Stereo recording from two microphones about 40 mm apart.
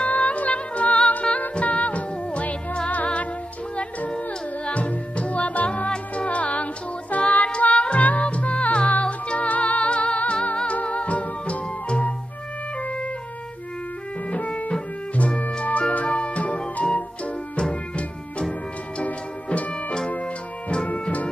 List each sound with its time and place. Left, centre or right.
0.0 s music: left
4.6 s music: left
14.3 s music: left
20.7 s music: left